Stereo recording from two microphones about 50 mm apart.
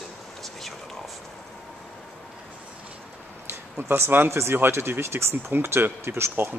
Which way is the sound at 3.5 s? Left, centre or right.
Right.